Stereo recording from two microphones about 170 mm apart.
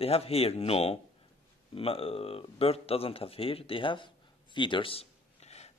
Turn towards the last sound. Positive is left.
turn(degrees=40)  # may be behind; listen again after turning